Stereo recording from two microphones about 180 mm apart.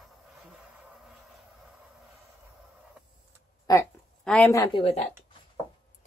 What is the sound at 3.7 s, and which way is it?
Speech, 20° left (ahead or behind).